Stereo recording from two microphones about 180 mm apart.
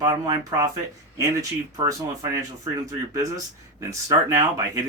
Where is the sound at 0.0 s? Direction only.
20° right (ahead or behind).